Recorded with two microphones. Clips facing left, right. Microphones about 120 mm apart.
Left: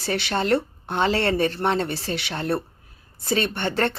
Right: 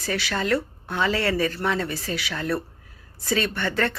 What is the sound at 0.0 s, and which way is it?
Speech, 25° left (ahead or behind).